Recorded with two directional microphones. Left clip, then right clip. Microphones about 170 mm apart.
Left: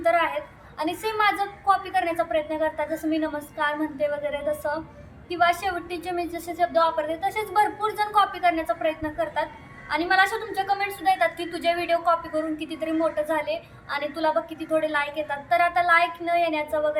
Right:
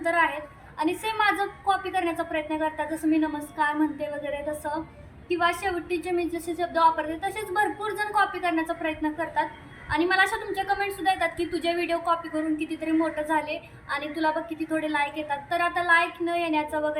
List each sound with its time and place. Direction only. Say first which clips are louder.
0.0 s a sound: left 2 dB; 10° left (ahead or behind)
0.8 s a woman's voice: left 1 dB; 5° left (ahead or behind)
5.3 s a woman's voice: left 3 dB; 5° left (ahead or behind)